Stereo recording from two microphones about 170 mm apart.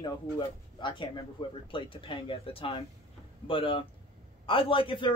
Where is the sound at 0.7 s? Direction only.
30° left (ahead or behind).